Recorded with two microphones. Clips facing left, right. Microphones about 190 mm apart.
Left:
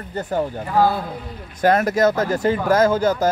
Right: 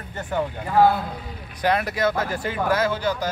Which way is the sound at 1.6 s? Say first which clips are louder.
Left 6 dB; 45° left (ahead or behind).